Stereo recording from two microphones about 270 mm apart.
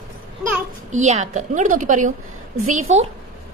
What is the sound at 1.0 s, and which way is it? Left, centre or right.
A child's voice, right.